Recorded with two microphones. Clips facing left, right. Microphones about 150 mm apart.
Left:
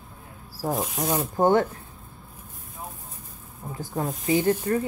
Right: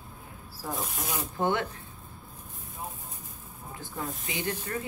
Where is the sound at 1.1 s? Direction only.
45° left (ahead or behind).